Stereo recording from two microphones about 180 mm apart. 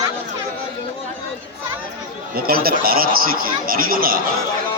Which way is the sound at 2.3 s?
55° right (ahead or behind).